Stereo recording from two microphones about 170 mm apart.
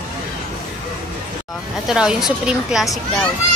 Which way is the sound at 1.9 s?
5° right (ahead or behind).